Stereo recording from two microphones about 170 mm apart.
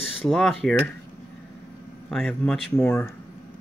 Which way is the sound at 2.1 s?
Centre (ahead or behind).